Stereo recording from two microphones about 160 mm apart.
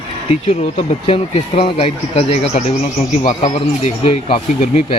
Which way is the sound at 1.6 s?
35° left (ahead or behind).